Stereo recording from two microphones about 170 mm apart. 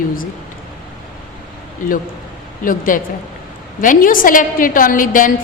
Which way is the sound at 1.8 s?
50° left (ahead or behind).